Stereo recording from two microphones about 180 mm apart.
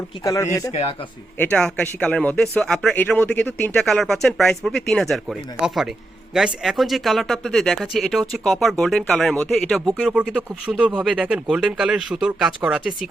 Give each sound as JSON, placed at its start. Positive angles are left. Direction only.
{"t": 0.3, "sound": "speech", "side_deg": 15}
{"t": 0.7, "sound": "speech", "side_deg": 35}
{"t": 1.4, "sound": "speech", "side_deg": 5}